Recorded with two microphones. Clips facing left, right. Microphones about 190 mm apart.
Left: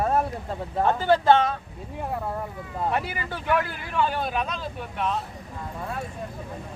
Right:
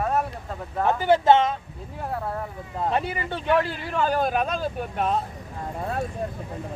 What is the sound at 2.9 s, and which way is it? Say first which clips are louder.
Speech: right 2 dB; 25° right (ahead or behind).